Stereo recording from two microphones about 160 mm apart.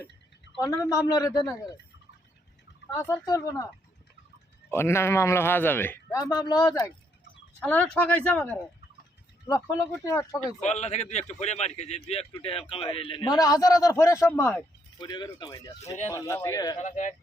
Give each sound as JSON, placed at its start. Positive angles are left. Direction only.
{"t": 0.6, "sound": "a man's voice", "side_deg": 20}
{"t": 2.9, "sound": "a man's voice", "side_deg": 20}
{"t": 4.7, "sound": "a man's voice", "side_deg": 15}
{"t": 7.6, "sound": "a man's voice", "side_deg": 10}
{"t": 9.5, "sound": "a man's voice", "side_deg": 20}
{"t": 10.6, "sound": "a man's voice", "side_deg": 45}
{"t": 14.9, "sound": "a man's voice", "side_deg": 25}
{"t": 16.8, "sound": "speech", "side_deg": 50}